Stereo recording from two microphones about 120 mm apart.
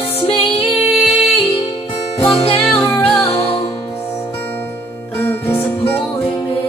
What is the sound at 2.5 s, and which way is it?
Music, 15° left (ahead or behind).